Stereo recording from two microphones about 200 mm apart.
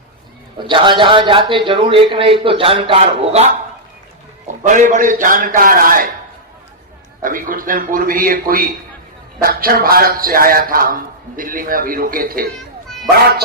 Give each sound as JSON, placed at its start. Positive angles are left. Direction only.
{"t": 0.6, "sound": "a man's voice", "side_deg": -25}
{"t": 4.4, "sound": "a man's voice", "side_deg": -40}
{"t": 7.2, "sound": "a man's voice", "side_deg": -45}